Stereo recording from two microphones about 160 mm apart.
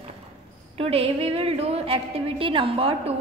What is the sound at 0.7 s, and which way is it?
A woman's voice, 35° right (ahead or behind).